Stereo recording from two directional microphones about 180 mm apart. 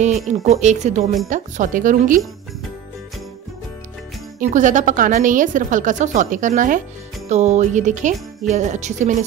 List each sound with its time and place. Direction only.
0.3 s a woman's voice: 40° right (ahead or behind)
4.4 s a woman's voice: 45° right (ahead or behind)